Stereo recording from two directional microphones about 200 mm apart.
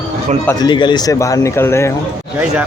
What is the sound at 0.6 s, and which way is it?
A man's voice, 20° left (ahead or behind).